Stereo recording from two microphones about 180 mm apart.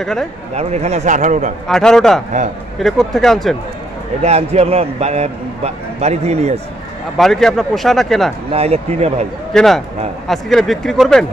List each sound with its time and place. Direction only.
0.0 s speech: 5° left (ahead or behind)
0.6 s a man's voice: 35° right (ahead or behind)
1.7 s speech: 5° left (ahead or behind)
4.2 s a man's voice: 35° right (ahead or behind)
7.2 s speech: centre (ahead or behind)
8.5 s a man's voice: 35° right (ahead or behind)
9.5 s speech: centre (ahead or behind)